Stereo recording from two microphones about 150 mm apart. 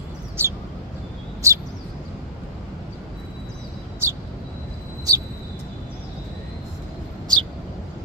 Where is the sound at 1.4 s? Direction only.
20° right (ahead or behind).